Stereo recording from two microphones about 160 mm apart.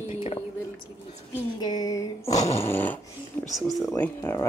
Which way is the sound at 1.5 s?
25° left (ahead or behind).